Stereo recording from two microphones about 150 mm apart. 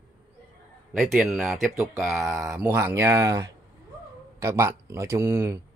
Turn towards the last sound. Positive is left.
turn(degrees=-15)  # may be behind; listen again after turning